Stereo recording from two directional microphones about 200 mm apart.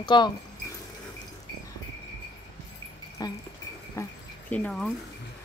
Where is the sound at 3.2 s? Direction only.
20° left (ahead or behind).